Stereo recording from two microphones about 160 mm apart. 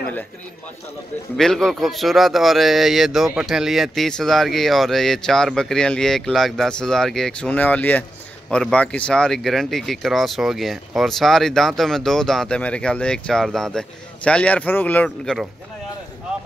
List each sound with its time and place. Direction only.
1.3 s speech: centre (ahead or behind)
15.0 s speech: centre (ahead or behind)